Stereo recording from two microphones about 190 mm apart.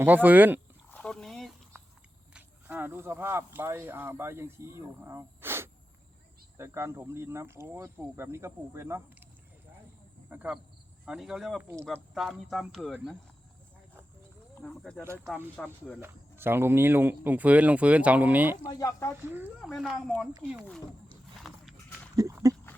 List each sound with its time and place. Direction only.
0.0 s speech: 10° right (ahead or behind)
0.9 s a sound: 5° left (ahead or behind)
2.3 s speech: 10° right (ahead or behind)
14.6 s speech: 5° left (ahead or behind)
15.0 s speech: 15° right (ahead or behind)
15.5 s speech: 10° left (ahead or behind)
16.0 s speech: 10° right (ahead or behind)
18.7 s speech: 15° left (ahead or behind)
19.3 s speech: 10° right (ahead or behind)
21.5 s horse: centre (ahead or behind)
22.1 s a sound: 15° right (ahead or behind)